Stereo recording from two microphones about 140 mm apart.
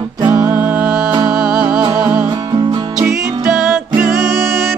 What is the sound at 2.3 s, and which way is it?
Music, 30° right (ahead or behind).